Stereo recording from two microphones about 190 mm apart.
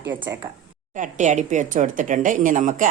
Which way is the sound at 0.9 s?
40° right (ahead or behind).